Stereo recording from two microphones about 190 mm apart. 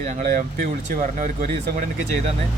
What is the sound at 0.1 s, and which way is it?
Speech, 45° right (ahead or behind).